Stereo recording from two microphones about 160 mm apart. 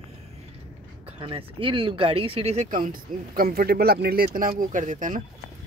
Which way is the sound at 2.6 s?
55° right (ahead or behind).